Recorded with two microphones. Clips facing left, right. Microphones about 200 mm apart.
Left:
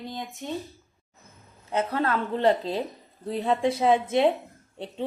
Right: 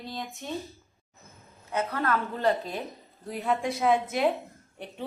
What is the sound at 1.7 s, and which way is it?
A woman's voice, 25° left (ahead or behind).